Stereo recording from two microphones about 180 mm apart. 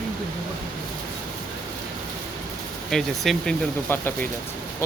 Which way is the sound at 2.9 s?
Centre (ahead or behind).